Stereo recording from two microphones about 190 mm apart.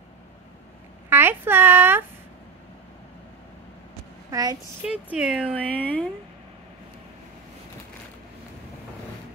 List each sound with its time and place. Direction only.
1.1 s speech: 10° right (ahead or behind)
4.3 s a woman's voice: 20° right (ahead or behind)
4.8 s speech: 5° right (ahead or behind)
5.5 s speech: 10° left (ahead or behind)